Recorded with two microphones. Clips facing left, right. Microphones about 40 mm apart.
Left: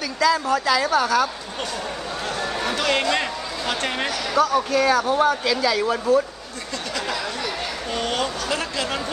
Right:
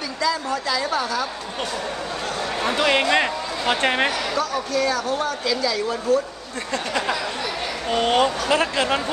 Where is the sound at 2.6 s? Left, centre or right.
Centre.